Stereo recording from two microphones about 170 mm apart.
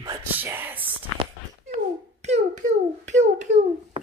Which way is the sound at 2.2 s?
45° right (ahead or behind).